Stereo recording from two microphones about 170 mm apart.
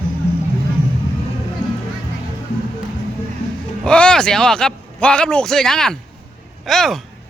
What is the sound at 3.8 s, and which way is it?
A man's voice, 5° left (ahead or behind).